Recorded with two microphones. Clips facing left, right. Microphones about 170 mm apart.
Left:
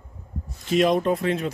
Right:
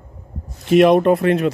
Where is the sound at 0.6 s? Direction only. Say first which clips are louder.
Right 8 dB; 65° right (ahead or behind).